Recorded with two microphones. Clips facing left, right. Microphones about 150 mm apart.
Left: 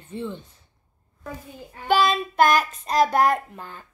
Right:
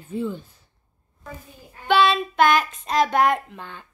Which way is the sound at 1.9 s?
40° left (ahead or behind).